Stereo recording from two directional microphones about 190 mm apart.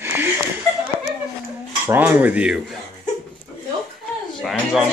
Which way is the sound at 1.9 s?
10° right (ahead or behind).